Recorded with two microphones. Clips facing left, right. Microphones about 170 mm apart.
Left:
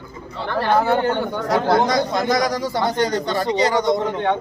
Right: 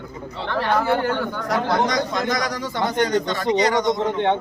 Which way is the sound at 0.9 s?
30° left (ahead or behind).